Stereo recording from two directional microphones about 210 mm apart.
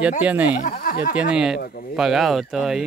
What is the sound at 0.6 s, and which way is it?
Speech, 45° left (ahead or behind).